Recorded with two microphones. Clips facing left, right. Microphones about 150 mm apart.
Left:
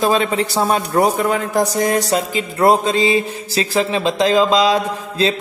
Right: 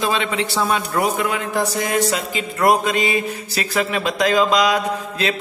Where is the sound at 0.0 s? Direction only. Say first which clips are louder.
Left 5 dB; 40° left (ahead or behind).